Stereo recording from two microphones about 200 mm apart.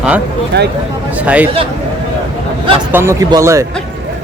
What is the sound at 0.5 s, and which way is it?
Speech, 60° right (ahead or behind).